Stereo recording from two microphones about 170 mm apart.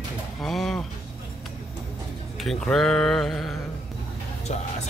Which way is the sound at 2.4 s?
Centre (ahead or behind).